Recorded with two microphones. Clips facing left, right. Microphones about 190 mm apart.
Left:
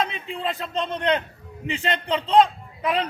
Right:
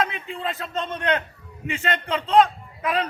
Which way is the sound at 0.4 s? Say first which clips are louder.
Left 2 dB; 15° left (ahead or behind).